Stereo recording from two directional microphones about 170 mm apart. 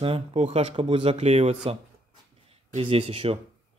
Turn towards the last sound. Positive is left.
turn(degrees=-35)  # may be behind; listen again after turning